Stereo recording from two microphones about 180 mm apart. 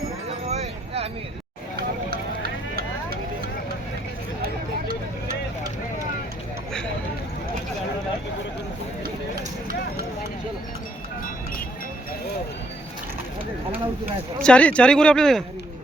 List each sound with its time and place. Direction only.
0.4 s wind chime: 35° right (ahead or behind)
1.7 s vehicle: 60° right (ahead or behind)
14.4 s speech: 5° left (ahead or behind)